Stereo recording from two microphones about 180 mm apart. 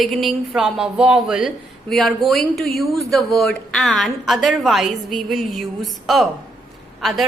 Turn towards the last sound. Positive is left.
turn(degrees=0)  # may be behind; listen again after turning